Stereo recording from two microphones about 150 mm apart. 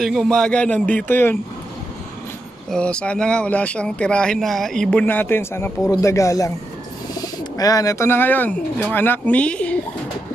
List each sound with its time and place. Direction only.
0.0 s speech: centre (ahead or behind)
2.7 s speech: 5° left (ahead or behind)
5.0 s speech: 15° left (ahead or behind)